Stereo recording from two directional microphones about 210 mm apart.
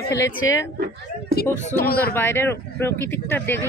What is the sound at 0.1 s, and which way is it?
Speech, 15° left (ahead or behind).